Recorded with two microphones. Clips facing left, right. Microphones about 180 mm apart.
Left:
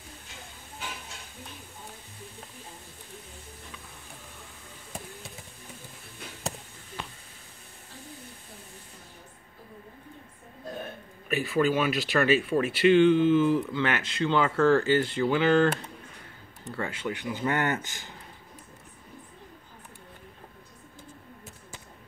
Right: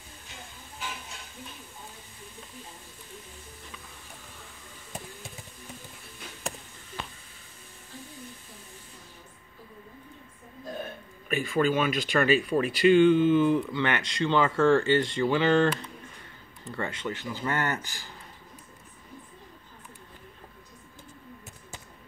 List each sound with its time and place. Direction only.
11.2 s speech: 5° left (ahead or behind)
16.7 s speech: 5° left (ahead or behind)